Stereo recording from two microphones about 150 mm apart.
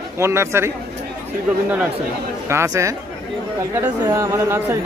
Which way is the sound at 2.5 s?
20° right (ahead or behind).